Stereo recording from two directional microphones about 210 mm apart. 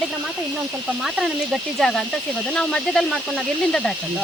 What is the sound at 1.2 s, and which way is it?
Speech, centre (ahead or behind).